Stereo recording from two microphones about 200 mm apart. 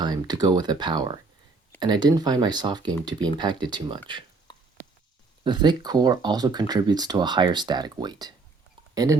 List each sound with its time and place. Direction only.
0.0 s speech: 20° right (ahead or behind)
4.5 s a sound: 20° left (ahead or behind)
5.4 s speech: 20° right (ahead or behind)